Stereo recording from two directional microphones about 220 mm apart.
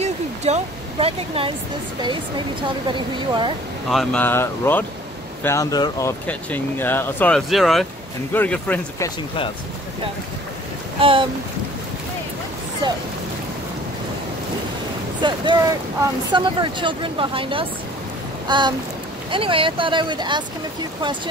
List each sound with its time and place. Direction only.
0.0 s a sound: 30° right (ahead or behind)
2.9 s speech: 20° right (ahead or behind)
3.9 s speech: centre (ahead or behind)
11.0 s speech: 25° right (ahead or behind)
12.8 s speech: 20° right (ahead or behind)
15.2 s speech: 20° right (ahead or behind)